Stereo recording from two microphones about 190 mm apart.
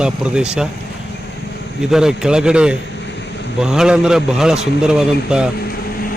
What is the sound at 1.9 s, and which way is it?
A man's voice, 5° right (ahead or behind).